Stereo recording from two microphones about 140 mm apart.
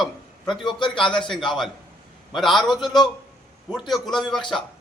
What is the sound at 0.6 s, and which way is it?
Speech, 35° left (ahead or behind).